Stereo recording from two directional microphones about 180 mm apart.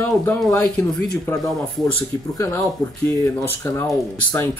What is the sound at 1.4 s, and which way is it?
Speech, centre (ahead or behind).